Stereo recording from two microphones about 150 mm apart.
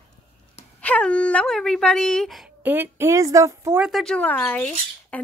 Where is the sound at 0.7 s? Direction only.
10° left (ahead or behind).